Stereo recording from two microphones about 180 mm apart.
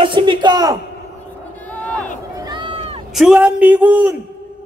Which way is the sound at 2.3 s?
25° right (ahead or behind).